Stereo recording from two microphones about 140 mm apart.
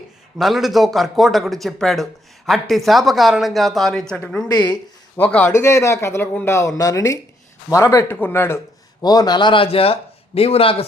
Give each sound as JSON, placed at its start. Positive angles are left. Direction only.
{"t": 0.3, "sound": "speech", "side_deg": 0}
{"t": 4.5, "sound": "a man's voice", "side_deg": 30}
{"t": 5.1, "sound": "a man's voice", "side_deg": 10}